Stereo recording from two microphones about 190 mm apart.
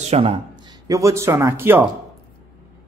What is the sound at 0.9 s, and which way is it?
Speech, 15° right (ahead or behind).